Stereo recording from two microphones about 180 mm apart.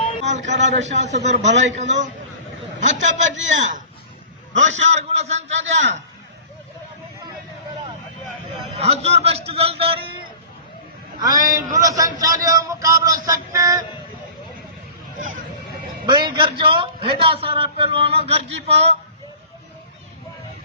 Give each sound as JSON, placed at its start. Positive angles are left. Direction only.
{"t": 0.6, "sound": "a man's voice", "side_deg": -40}
{"t": 3.3, "sound": "a man's voice", "side_deg": -90}
{"t": 4.9, "sound": "a man's voice", "side_deg": -35}
{"t": 9.0, "sound": "a man's voice", "side_deg": -35}
{"t": 11.2, "sound": "music", "side_deg": -20}
{"t": 16.0, "sound": "a man's voice", "side_deg": -25}